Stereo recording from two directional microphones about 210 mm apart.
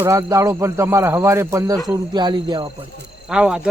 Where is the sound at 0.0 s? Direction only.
15° right (ahead or behind).